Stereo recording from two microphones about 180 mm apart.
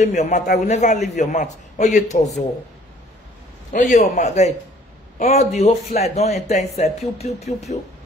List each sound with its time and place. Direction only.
0.0 s a man's voice: 40° left (ahead or behind)
3.7 s a man's voice: 45° left (ahead or behind)